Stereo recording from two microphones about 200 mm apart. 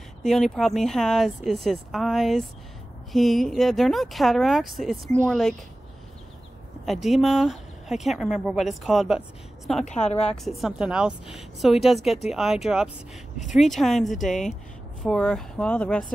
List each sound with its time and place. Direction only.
0.2 s speech: centre (ahead or behind)
6.9 s speech: centre (ahead or behind)
9.8 s a woman's voice: 35° left (ahead or behind)
10.3 s speech: centre (ahead or behind)